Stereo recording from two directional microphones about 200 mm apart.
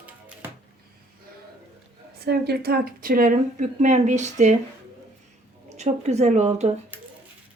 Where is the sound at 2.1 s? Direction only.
55° right (ahead or behind); by 4.5 s 35° right (ahead or behind).